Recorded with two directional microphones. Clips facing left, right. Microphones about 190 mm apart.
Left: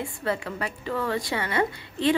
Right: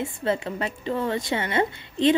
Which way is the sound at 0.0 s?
20° right (ahead or behind).